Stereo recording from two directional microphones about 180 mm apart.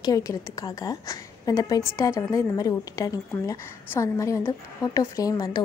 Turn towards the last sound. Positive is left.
turn(degrees=20)  # may be behind; listen again after turning